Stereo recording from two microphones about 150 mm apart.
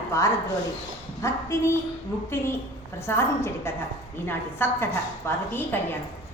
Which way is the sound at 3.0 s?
15° left (ahead or behind).